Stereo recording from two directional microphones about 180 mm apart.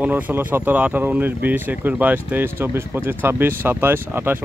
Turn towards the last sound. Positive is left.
turn(degrees=-10)  # may be behind; listen again after turning